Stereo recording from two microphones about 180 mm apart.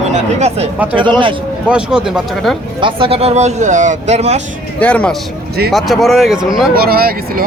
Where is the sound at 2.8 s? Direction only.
30° right (ahead or behind).